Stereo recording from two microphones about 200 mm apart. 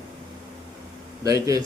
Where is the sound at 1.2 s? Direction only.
15° right (ahead or behind).